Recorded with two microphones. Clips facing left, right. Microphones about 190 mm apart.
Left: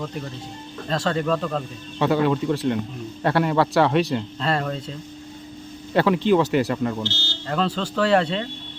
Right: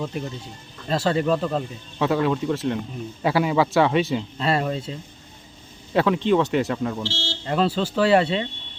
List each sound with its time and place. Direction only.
0.9 s speech: 5° right (ahead or behind)
2.0 s speech: centre (ahead or behind)
5.9 s speech: centre (ahead or behind)
7.0 s speech: 30° right (ahead or behind)
7.4 s speech: 5° right (ahead or behind)